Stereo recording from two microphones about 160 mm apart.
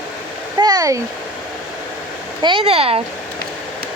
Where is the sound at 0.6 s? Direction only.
25° right (ahead or behind).